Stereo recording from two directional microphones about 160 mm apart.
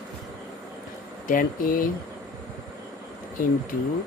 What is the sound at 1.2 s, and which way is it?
Speech, 60° left (ahead or behind).